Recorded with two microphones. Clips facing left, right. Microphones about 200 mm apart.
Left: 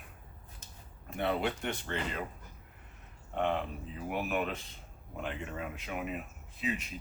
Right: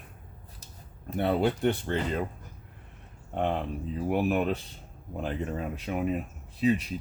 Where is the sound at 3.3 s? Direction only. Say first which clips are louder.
Right 3 dB; 35° right (ahead or behind).